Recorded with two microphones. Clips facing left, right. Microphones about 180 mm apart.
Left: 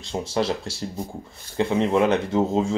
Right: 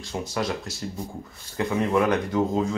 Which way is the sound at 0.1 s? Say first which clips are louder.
Left 4 dB; 30° left (ahead or behind).